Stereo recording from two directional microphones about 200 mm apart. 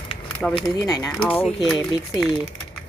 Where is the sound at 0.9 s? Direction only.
20° left (ahead or behind).